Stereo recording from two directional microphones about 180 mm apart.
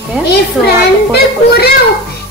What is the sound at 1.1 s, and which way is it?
Speech, 60° left (ahead or behind).